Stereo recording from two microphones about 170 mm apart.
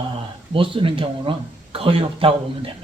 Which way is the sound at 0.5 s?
30° right (ahead or behind).